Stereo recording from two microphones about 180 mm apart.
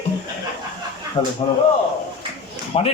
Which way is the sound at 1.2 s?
30° left (ahead or behind).